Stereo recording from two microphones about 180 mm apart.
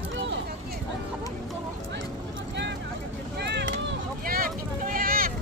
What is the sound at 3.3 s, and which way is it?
Vehicle, 70° right (ahead or behind).